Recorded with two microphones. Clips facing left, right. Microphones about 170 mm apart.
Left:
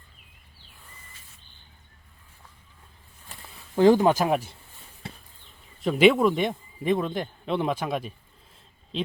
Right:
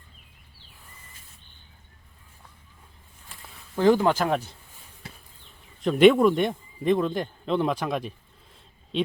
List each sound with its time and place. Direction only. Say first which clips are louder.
3.8 s speech: left 2 dB; 15° left (ahead or behind)
5.0 s a sound: left 4 dB; 25° left (ahead or behind)
5.8 s a man's voice: right 2 dB; 5° left (ahead or behind)